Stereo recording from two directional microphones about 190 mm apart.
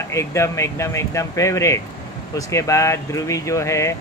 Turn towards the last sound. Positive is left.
turn(degrees=15)  # may be behind; listen again after turning